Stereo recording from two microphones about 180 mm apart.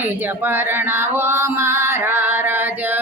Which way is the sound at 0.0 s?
10° right (ahead or behind).